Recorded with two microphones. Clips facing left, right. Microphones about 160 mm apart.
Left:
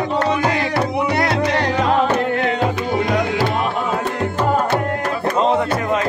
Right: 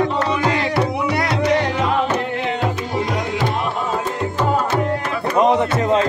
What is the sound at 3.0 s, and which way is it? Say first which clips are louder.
Music: left 3 dB; 65° left (ahead or behind).